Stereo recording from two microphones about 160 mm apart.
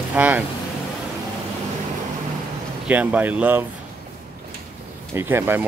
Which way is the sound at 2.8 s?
10° right (ahead or behind).